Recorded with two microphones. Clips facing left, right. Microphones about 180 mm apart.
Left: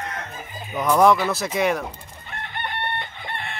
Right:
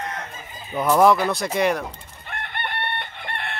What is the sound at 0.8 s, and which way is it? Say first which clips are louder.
Speech: even; 5° right (ahead or behind).